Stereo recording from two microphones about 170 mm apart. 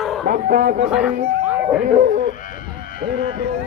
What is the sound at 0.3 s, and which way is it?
Speech, 55° right (ahead or behind).